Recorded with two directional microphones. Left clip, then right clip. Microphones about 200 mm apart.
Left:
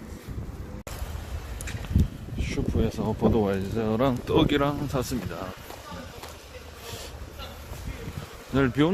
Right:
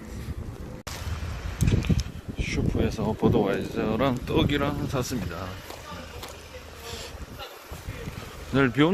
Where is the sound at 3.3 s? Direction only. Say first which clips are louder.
Right 1 dB; 15° left (ahead or behind).